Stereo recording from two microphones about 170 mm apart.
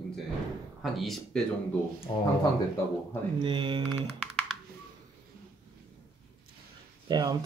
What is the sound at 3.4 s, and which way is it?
Speech, 30° right (ahead or behind).